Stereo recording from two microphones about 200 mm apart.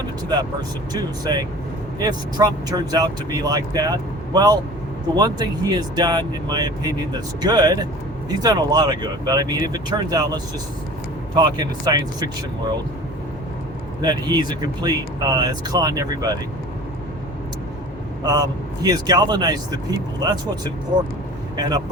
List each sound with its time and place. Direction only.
0.9 s speech: 20° right (ahead or behind)
14.0 s speech: 20° right (ahead or behind)
18.2 s speech: 20° right (ahead or behind)